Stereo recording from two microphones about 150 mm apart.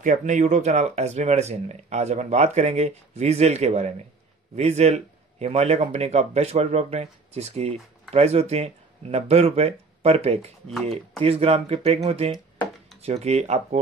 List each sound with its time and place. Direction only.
0.0 s speech: 55° right (ahead or behind)